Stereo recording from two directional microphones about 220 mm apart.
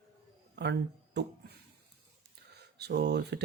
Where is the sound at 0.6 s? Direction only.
50° right (ahead or behind).